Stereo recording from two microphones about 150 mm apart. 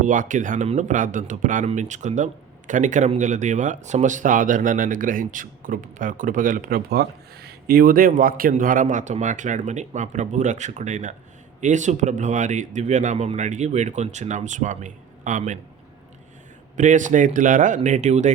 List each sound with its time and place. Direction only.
0.0 s a man's voice: 60° right (ahead or behind)
16.7 s speech: 55° right (ahead or behind)